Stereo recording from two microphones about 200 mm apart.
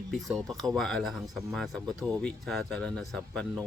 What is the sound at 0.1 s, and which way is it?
Speech, centre (ahead or behind).